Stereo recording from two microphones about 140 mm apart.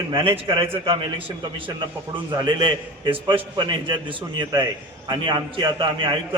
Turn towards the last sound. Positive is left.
turn(degrees=-35)  # may be behind; listen again after turning